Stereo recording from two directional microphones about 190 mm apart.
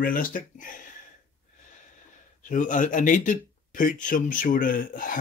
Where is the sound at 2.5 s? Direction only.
40° left (ahead or behind).